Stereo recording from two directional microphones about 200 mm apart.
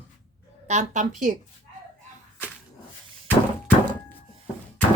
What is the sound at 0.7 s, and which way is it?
Speech, 35° right (ahead or behind).